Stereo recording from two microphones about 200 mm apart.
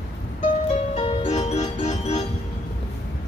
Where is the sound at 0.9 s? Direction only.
30° left (ahead or behind).